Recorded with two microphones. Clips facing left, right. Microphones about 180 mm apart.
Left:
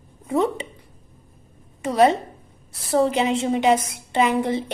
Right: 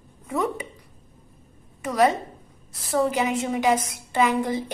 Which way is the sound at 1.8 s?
25° left (ahead or behind).